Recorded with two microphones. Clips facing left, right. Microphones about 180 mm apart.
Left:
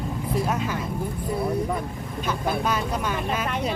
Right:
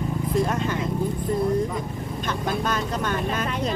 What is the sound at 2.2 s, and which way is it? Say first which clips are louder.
Speech: left 1 dB; 10° left (ahead or behind).